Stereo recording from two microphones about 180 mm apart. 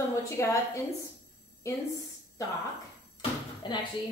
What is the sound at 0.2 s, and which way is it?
Speech, 15° left (ahead or behind).